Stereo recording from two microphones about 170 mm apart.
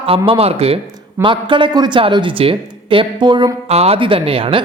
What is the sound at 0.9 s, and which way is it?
Speech, 25° right (ahead or behind).